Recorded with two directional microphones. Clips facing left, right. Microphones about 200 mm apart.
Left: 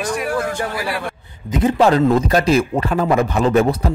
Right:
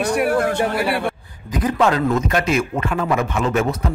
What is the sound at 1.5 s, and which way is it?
A man's voice, 25° left (ahead or behind).